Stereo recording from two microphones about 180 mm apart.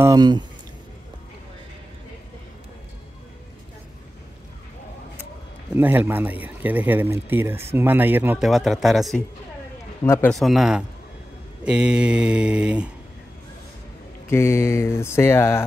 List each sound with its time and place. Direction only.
0.0 s speech: 20° right (ahead or behind)
5.8 s speech: 10° right (ahead or behind)
8.5 s mantra: centre (ahead or behind)
10.0 s mantra: 15° left (ahead or behind)
10.3 s mantra: centre (ahead or behind)
14.3 s mantra: 15° left (ahead or behind)